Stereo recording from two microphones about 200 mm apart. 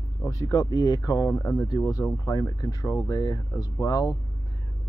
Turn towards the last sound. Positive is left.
turn(degrees=15)  # may be behind; listen again after turning